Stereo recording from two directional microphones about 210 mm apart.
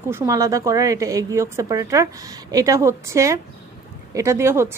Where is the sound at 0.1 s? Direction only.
15° right (ahead or behind).